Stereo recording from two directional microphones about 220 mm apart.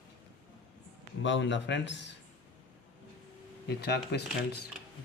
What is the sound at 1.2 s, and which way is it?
Speech, 55° left (ahead or behind).